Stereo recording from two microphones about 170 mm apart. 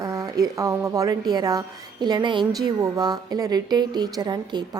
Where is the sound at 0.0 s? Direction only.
20° right (ahead or behind).